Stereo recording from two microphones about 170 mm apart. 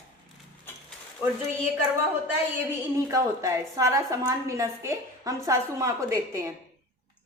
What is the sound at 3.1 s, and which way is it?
A woman's voice, 20° right (ahead or behind).